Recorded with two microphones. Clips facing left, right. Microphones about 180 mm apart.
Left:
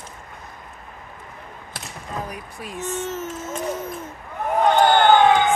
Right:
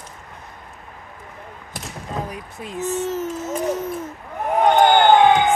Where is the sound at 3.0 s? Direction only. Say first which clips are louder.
Right 4 dB; 35° right (ahead or behind).